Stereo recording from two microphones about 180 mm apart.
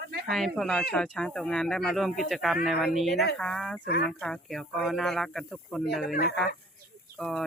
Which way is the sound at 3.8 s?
65° left (ahead or behind).